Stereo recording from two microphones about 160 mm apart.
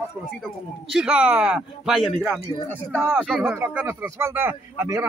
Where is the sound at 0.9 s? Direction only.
5° right (ahead or behind).